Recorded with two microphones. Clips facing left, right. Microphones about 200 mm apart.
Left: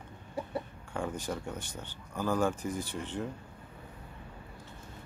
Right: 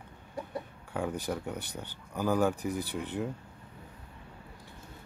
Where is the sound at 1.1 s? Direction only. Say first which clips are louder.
Right 2 dB; 15° right (ahead or behind).